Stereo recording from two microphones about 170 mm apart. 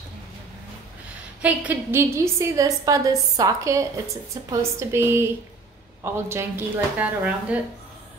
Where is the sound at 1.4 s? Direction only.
10° right (ahead or behind).